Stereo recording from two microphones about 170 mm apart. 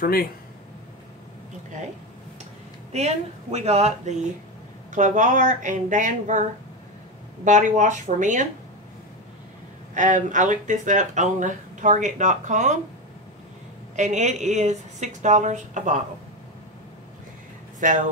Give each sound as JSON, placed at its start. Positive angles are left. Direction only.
{"t": 0.0, "sound": "speech", "side_deg": 60}
{"t": 2.9, "sound": "speech", "side_deg": -40}
{"t": 7.4, "sound": "speech", "side_deg": -45}
{"t": 9.9, "sound": "speech", "side_deg": -45}
{"t": 13.9, "sound": "speech", "side_deg": -45}
{"t": 17.7, "sound": "speech", "side_deg": -50}